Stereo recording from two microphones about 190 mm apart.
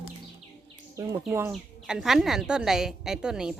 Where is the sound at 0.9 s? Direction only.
20° right (ahead or behind).